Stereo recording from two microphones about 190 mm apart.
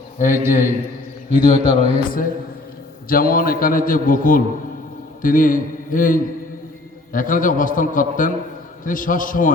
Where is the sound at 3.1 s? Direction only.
50° left (ahead or behind).